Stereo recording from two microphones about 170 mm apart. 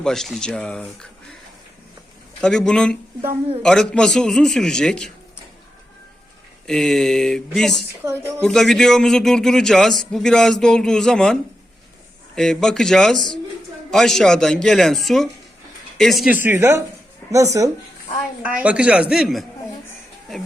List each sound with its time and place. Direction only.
0.0 s a man's voice: centre (ahead or behind)
2.4 s a man's voice: 5° left (ahead or behind)
6.7 s a man's voice: 5° left (ahead or behind)
8.0 s a man's voice: 15° right (ahead or behind)
8.4 s a man's voice: centre (ahead or behind); by 17.7 s 20° right (ahead or behind)
18.4 s a man's voice: 10° right (ahead or behind)